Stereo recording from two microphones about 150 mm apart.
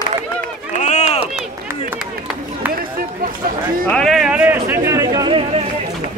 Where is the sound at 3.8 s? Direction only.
5° left (ahead or behind); by 5.4 s 25° right (ahead or behind).